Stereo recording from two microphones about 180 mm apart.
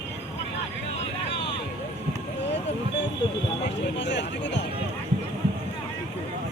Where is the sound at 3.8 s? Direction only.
75° left (ahead or behind).